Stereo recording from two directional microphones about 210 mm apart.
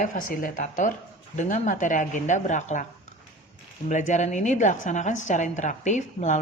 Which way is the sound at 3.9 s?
35° left (ahead or behind).